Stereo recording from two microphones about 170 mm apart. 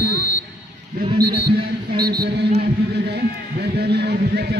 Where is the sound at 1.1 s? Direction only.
65° right (ahead or behind).